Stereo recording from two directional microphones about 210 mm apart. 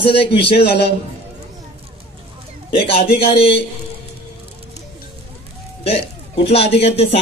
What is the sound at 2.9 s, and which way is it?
Speech, 25° left (ahead or behind).